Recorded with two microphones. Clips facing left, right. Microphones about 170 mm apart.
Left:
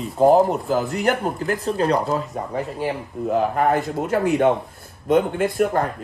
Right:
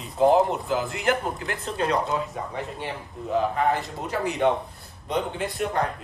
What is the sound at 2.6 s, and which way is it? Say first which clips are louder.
A man's voice: left 7 dB; centre (ahead or behind).